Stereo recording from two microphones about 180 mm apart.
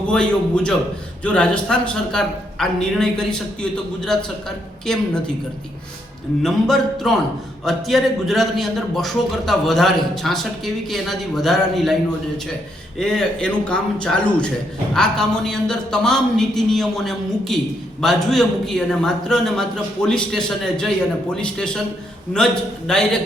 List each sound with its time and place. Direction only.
0.1 s a man's voice: 5° left (ahead or behind)
6.4 s a man's voice: centre (ahead or behind)
13.0 s a man's voice: 5° left (ahead or behind)
22.4 s a man's voice: 5° left (ahead or behind)